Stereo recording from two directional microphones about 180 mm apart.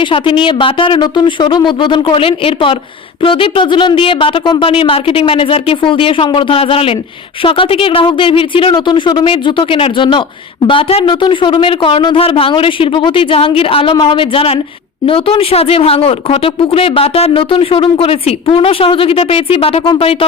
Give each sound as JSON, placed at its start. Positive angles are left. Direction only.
{"t": 0.0, "sound": "speech", "side_deg": 25}